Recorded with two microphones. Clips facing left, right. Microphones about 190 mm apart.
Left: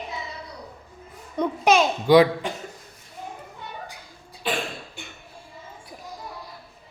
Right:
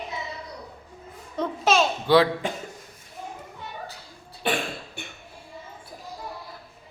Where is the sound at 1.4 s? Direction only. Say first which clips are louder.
Left 3 dB; 15° left (ahead or behind).